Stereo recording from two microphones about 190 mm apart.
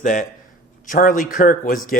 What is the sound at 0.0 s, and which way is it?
A man's voice, 40° left (ahead or behind).